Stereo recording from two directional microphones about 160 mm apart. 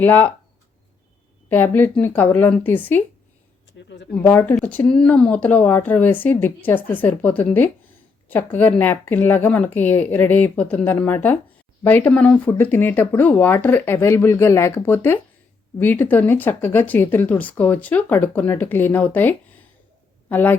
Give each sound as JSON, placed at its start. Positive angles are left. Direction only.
{"t": 0.0, "sound": "speech", "side_deg": 10}
{"t": 1.5, "sound": "speech", "side_deg": 10}
{"t": 3.7, "sound": "speech", "side_deg": 90}
{"t": 4.2, "sound": "speech", "side_deg": 10}